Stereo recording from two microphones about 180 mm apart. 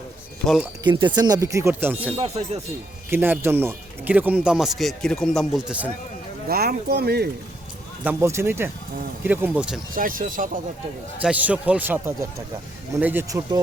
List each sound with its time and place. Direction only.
0.4 s speech: centre (ahead or behind)
0.9 s speech: 25° right (ahead or behind); by 2.1 s 10° right (ahead or behind)
2.1 s speech: 35° right (ahead or behind)
3.1 s speech: 10° right (ahead or behind)
6.5 s speech: 60° right (ahead or behind)
8.0 s speech: 15° right (ahead or behind)
9.9 s speech: 50° right (ahead or behind)
11.2 s speech: 5° right (ahead or behind)